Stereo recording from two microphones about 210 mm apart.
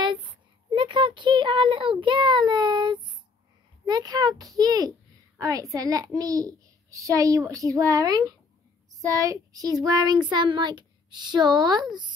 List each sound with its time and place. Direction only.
0.0 s a child's voice: 20° right (ahead or behind)